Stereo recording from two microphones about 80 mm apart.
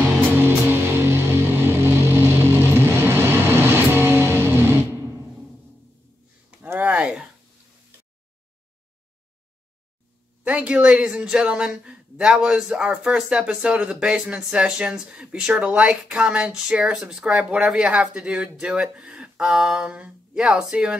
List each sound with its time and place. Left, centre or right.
0.0 s music: right
6.8 s a sound: centre
10.4 s speech: centre